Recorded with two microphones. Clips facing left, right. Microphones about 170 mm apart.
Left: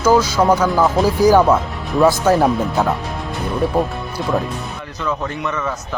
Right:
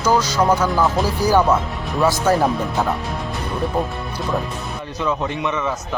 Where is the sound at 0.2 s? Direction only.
10° left (ahead or behind).